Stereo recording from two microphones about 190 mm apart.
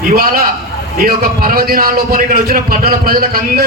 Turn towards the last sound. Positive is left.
turn(degrees=-50)  # may be behind; listen again after turning